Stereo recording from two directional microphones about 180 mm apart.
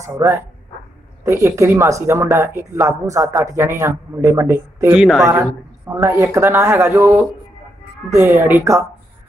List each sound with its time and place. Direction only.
0.0 s speech: 15° right (ahead or behind)
4.9 s speech: centre (ahead or behind)
5.2 s speech: 15° right (ahead or behind)